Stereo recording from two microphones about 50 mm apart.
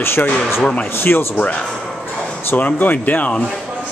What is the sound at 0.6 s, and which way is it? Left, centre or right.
Speech, centre.